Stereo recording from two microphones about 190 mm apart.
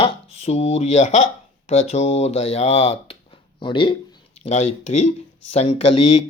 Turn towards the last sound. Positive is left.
turn(degrees=30)  # may be behind; listen again after turning